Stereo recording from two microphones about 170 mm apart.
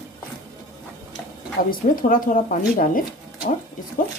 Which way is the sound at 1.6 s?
55° left (ahead or behind).